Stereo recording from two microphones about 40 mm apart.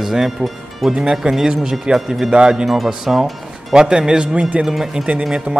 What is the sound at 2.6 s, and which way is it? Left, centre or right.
Speech, centre.